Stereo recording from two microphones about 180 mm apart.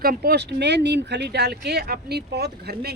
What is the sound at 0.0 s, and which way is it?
A woman's voice, 55° right (ahead or behind).